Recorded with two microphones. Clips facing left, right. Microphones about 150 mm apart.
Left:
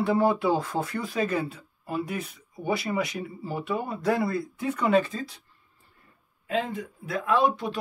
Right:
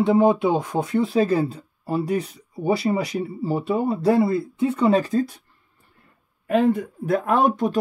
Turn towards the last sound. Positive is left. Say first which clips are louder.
# right 5 dB
turn(degrees=-45)  # may be behind; listen again after turning